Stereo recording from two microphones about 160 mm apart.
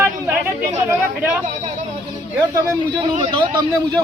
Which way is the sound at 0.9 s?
15° right (ahead or behind).